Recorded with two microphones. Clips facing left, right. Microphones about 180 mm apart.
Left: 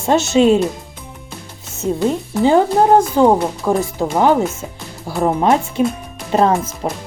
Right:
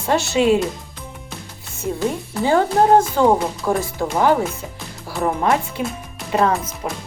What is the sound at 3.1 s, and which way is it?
Speech, 20° left (ahead or behind).